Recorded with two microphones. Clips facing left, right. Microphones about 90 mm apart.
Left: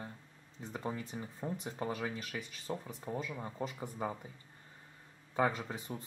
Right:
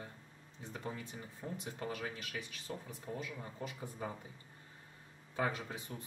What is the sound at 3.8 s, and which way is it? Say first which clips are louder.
Speech: left 3 dB; 20° left (ahead or behind).